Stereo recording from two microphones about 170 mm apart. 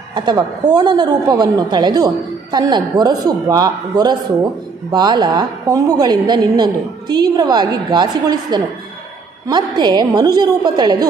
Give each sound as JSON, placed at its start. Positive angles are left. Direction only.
{"t": 0.1, "sound": "a woman's voice", "side_deg": -25}